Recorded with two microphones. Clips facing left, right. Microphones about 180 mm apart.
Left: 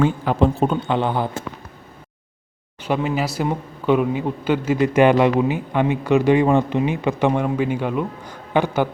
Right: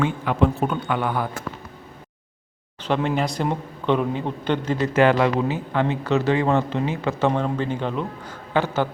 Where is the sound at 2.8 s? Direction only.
5° left (ahead or behind).